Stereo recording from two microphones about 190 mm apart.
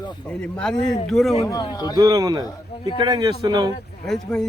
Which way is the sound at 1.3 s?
20° left (ahead or behind).